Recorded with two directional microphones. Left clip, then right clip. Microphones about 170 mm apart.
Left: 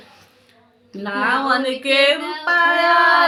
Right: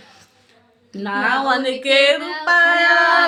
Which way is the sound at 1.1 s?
20° right (ahead or behind).